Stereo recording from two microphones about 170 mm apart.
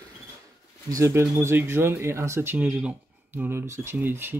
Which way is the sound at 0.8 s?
15° right (ahead or behind).